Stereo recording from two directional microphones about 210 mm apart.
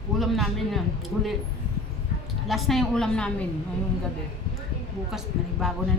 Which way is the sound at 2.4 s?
Centre (ahead or behind).